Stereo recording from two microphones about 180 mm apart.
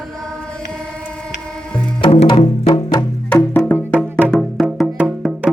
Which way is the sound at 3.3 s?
5° left (ahead or behind).